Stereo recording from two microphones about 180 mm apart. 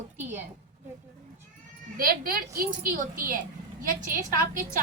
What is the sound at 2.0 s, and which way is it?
A woman's voice, 55° right (ahead or behind).